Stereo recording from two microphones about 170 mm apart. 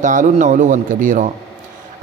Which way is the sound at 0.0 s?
50° right (ahead or behind).